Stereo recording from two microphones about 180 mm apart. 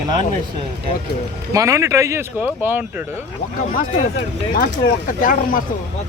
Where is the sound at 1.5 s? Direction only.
15° right (ahead or behind).